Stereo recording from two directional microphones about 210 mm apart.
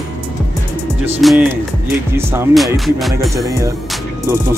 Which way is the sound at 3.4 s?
15° right (ahead or behind).